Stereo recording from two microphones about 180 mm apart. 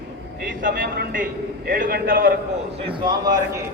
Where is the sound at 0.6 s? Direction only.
50° right (ahead or behind).